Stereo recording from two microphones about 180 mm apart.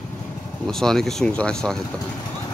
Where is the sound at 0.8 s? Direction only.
5° left (ahead or behind).